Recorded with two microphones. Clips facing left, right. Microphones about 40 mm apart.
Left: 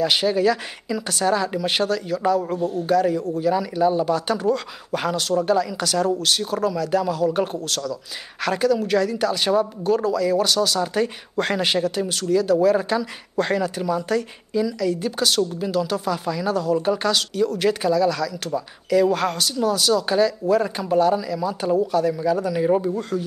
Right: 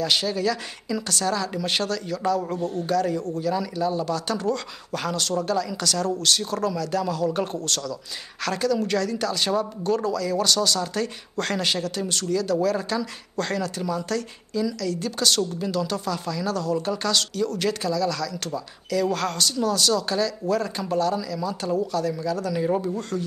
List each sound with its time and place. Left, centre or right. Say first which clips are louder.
0.0 s speech: left 5 dB; centre